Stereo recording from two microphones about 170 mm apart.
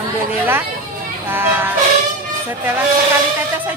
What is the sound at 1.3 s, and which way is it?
Speech, 10° right (ahead or behind).